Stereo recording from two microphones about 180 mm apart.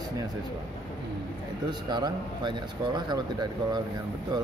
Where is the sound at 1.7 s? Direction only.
25° right (ahead or behind).